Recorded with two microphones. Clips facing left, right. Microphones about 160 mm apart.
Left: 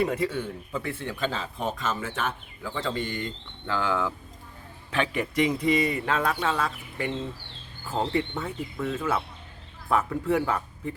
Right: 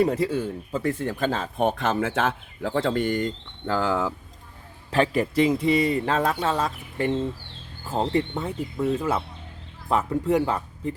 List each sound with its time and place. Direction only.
0.0 s a man's voice: 35° right (ahead or behind)
8.4 s speech: 25° right (ahead or behind)
10.4 s speech: 30° right (ahead or behind)